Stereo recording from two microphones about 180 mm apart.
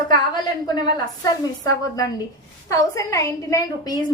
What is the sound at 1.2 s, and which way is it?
A woman's voice, 20° left (ahead or behind).